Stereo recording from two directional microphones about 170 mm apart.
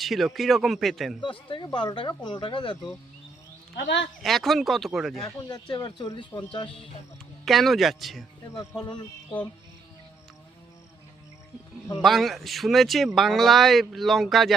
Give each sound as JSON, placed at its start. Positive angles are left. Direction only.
{"t": 0.0, "sound": "speech", "side_deg": 0}
{"t": 1.2, "sound": "speech", "side_deg": 30}
{"t": 3.8, "sound": "speech", "side_deg": 90}
{"t": 4.2, "sound": "speech", "side_deg": 0}
{"t": 5.5, "sound": "speech", "side_deg": 25}
{"t": 7.4, "sound": "speech", "side_deg": 0}
{"t": 8.5, "sound": "speech", "side_deg": 20}
{"t": 12.0, "sound": "speech", "side_deg": 0}